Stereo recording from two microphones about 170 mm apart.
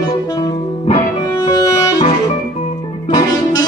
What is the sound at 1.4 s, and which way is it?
Music, 20° left (ahead or behind).